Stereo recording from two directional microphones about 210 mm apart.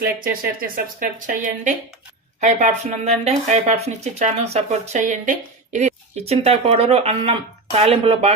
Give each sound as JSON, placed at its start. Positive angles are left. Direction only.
{"t": 0.0, "sound": "speech", "side_deg": -45}